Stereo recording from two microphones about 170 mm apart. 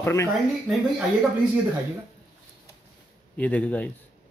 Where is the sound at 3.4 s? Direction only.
10° left (ahead or behind).